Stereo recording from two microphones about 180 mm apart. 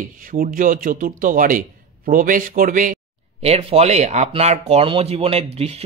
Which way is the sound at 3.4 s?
35° right (ahead or behind).